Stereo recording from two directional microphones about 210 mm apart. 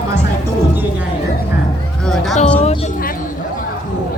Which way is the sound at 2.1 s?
Centre (ahead or behind).